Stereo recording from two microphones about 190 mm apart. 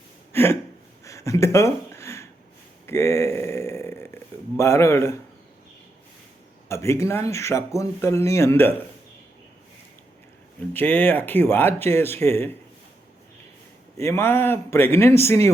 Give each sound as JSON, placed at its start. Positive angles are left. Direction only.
{"t": 0.3, "sound": "a sound", "side_deg": 15}
{"t": 6.7, "sound": "speech", "side_deg": 15}
{"t": 10.8, "sound": "speech", "side_deg": 10}
{"t": 13.9, "sound": "speech", "side_deg": 15}